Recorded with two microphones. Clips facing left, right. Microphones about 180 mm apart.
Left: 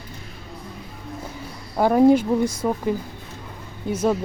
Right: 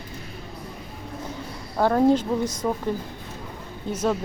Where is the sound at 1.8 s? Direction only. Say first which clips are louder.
Left 4 dB; 10° left (ahead or behind).